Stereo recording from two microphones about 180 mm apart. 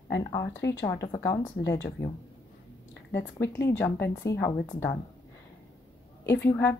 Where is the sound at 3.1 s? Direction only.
15° left (ahead or behind).